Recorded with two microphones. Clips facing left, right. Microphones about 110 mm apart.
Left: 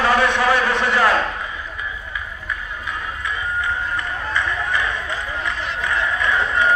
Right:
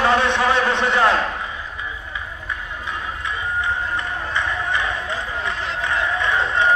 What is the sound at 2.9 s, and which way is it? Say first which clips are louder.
Music: even; 20° right (ahead or behind).